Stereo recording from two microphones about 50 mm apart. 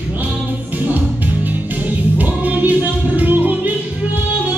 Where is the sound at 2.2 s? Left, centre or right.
Right.